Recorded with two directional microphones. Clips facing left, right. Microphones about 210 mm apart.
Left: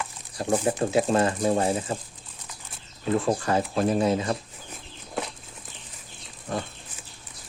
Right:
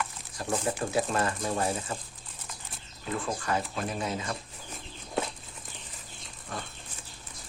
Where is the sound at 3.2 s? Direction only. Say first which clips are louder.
Left 7 dB; 35° left (ahead or behind).